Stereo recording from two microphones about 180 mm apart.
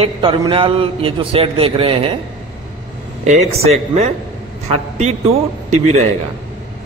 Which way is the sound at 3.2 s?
40° right (ahead or behind).